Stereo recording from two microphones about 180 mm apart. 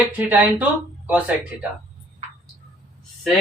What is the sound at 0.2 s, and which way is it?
Speech, 10° right (ahead or behind).